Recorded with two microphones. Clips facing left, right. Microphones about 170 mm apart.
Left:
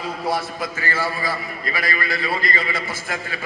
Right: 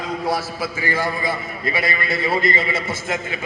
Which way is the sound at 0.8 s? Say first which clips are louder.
Right 3 dB; 15° right (ahead or behind).